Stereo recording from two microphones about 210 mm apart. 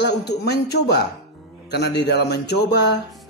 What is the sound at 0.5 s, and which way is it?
Speech, 50° left (ahead or behind).